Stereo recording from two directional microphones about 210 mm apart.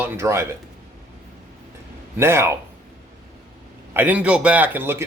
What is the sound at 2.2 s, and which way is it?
Speech, 10° right (ahead or behind).